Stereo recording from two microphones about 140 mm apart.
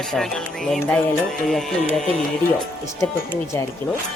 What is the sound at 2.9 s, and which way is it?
Speech, 20° left (ahead or behind).